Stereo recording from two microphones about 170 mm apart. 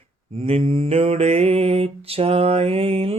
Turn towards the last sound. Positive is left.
turn(degrees=-35)  # may be behind; listen again after turning